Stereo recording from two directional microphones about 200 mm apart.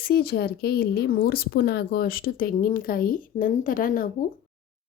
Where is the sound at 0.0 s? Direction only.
50° left (ahead or behind).